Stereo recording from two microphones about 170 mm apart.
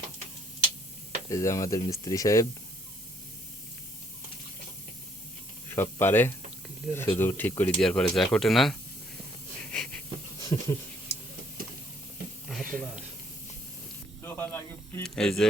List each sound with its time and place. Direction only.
1.3 s speech: 20° left (ahead or behind)
5.7 s speech: 15° left (ahead or behind)
9.7 s hiss: 5° left (ahead or behind)
10.5 s speech: 20° left (ahead or behind)
12.5 s a sound: 5° left (ahead or behind)
14.2 s snake: 15° left (ahead or behind)
15.0 s speech: 5° left (ahead or behind)